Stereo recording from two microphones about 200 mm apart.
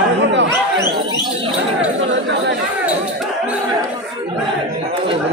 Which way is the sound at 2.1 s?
60° right (ahead or behind).